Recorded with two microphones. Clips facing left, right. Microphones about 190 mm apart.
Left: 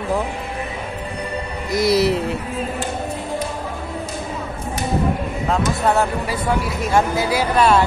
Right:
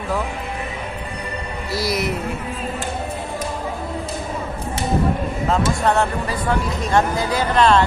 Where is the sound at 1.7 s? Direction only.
20° left (ahead or behind).